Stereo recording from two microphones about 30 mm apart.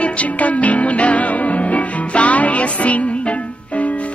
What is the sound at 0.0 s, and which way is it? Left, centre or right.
Music, left.